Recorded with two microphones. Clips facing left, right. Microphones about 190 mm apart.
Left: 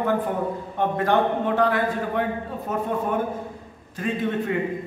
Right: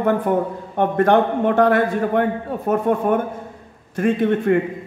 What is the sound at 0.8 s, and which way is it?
A man's voice, 55° right (ahead or behind).